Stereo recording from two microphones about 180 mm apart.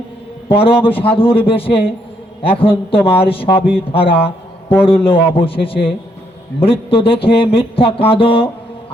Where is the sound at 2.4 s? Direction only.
30° left (ahead or behind).